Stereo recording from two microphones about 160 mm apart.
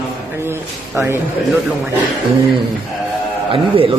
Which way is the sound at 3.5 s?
35° right (ahead or behind).